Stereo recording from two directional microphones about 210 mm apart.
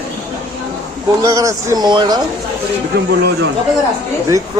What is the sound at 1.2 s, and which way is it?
Speech, 15° right (ahead or behind).